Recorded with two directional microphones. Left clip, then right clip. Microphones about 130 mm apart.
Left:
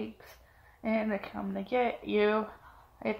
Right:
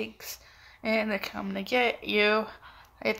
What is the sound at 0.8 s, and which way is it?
Speech, 30° right (ahead or behind).